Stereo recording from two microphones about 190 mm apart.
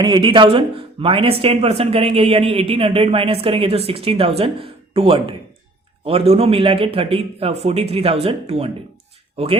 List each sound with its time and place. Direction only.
0.0 s speech: 25° right (ahead or behind)